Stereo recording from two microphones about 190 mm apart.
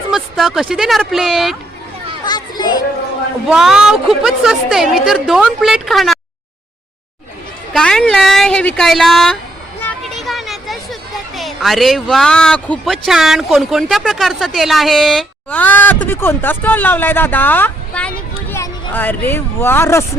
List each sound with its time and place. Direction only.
0.1 s speech: centre (ahead or behind)
2.2 s children playing: 20° left (ahead or behind)
3.5 s speech: 5° right (ahead or behind)
7.7 s speech: 5° left (ahead or behind)
10.0 s a sound: centre (ahead or behind)
11.3 s speech: centre (ahead or behind)